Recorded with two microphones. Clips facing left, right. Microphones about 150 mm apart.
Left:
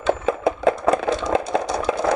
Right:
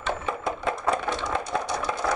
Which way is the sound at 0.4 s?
75° left (ahead or behind).